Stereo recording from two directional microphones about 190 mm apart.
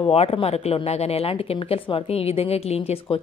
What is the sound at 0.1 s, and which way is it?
A woman's voice, 30° left (ahead or behind).